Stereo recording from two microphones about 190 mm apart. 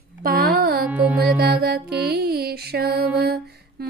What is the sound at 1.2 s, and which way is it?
Music, 55° right (ahead or behind).